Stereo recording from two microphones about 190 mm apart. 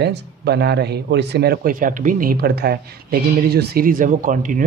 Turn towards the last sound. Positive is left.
turn(degrees=-45)  # may be behind; listen again after turning